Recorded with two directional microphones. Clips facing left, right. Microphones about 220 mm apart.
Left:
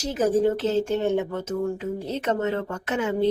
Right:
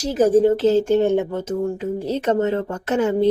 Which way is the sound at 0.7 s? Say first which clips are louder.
Right 6 dB; 35° right (ahead or behind).